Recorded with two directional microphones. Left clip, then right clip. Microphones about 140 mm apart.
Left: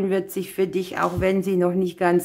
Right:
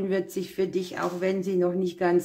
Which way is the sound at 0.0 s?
20° left (ahead or behind).